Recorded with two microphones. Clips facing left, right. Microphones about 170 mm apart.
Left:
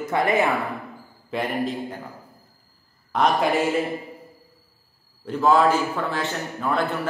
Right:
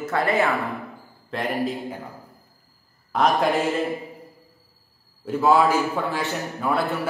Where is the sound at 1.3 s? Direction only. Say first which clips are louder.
Even; centre (ahead or behind).